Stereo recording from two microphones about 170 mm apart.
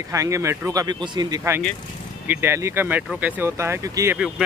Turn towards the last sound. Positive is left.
turn(degrees=-5)  # may be behind; listen again after turning